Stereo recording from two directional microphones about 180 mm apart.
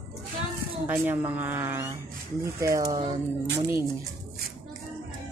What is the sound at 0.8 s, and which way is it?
Speech, 10° right (ahead or behind).